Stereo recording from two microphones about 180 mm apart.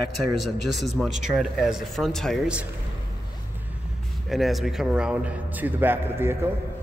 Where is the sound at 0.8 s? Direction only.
Centre (ahead or behind).